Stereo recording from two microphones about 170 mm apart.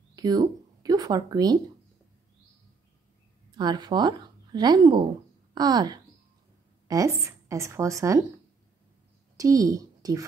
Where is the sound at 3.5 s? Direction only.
25° right (ahead or behind).